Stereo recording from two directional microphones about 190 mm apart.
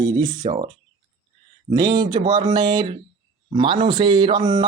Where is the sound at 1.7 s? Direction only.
25° right (ahead or behind).